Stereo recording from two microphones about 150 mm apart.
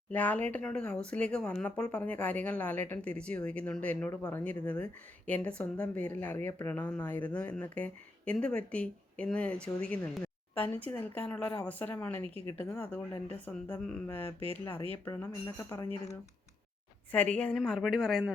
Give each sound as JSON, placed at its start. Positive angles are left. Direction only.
{"t": 0.1, "sound": "speech", "side_deg": 10}
{"t": 17.1, "sound": "a woman's voice", "side_deg": 10}